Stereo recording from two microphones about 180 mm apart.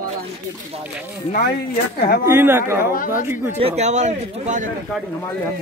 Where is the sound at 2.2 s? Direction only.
15° right (ahead or behind).